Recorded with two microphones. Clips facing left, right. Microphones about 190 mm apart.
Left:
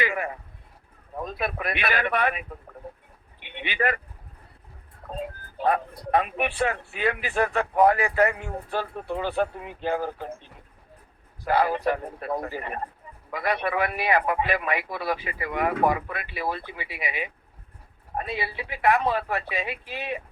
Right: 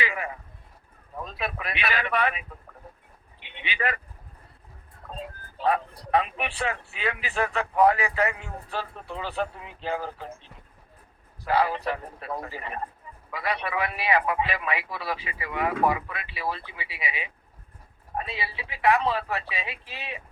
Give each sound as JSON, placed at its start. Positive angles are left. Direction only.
{"t": 0.0, "sound": "a sound", "side_deg": 50}
{"t": 1.2, "sound": "speech", "side_deg": 50}
{"t": 5.5, "sound": "speech", "side_deg": 50}